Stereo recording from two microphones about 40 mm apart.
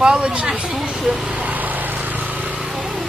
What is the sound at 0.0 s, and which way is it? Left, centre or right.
Speech, right.